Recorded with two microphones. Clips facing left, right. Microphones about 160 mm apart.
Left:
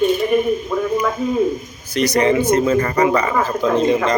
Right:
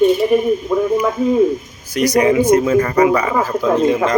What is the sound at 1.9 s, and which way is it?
Speech, 10° right (ahead or behind).